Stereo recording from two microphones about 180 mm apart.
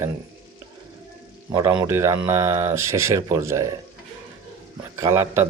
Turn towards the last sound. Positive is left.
turn(degrees=-15)  # may be behind; listen again after turning